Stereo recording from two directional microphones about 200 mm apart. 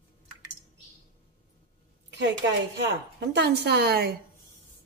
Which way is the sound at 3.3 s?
55° right (ahead or behind).